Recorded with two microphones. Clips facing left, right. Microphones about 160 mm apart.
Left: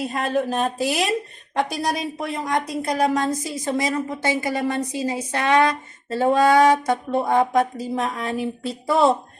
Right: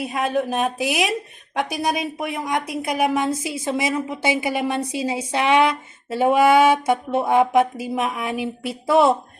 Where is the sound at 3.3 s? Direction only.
10° right (ahead or behind).